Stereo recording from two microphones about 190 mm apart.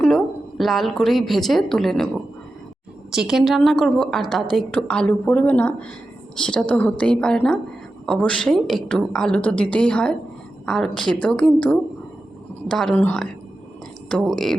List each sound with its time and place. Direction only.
0.0 s speech: 5° left (ahead or behind)
3.1 s a woman's voice: centre (ahead or behind)